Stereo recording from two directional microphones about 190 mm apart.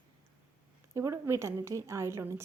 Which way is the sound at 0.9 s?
15° right (ahead or behind).